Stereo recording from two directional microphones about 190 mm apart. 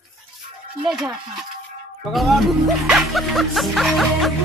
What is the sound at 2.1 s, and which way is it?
Music, centre (ahead or behind).